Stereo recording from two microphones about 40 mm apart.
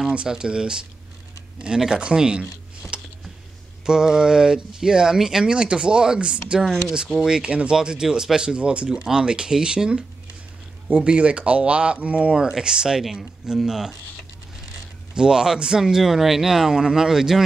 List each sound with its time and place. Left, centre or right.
0.3 s speech: right
7.4 s speech: right
12.4 s speech: centre
15.1 s speech: centre